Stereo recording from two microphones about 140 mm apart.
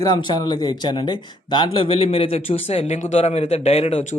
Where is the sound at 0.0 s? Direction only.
30° left (ahead or behind).